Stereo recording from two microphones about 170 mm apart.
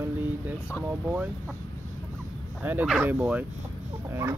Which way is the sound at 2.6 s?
10° right (ahead or behind).